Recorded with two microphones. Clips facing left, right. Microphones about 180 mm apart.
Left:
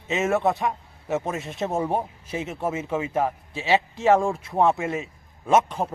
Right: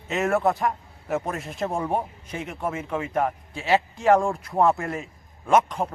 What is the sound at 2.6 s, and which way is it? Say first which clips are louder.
Speech: left 1 dB; 25° left (ahead or behind).